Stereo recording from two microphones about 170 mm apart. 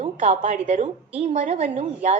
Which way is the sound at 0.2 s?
45° right (ahead or behind).